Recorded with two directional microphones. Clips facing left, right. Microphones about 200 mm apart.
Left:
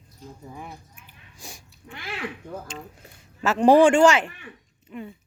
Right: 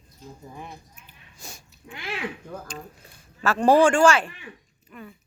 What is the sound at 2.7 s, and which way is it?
Speech, 20° left (ahead or behind).